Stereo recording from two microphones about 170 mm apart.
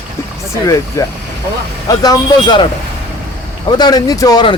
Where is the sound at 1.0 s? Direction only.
20° left (ahead or behind).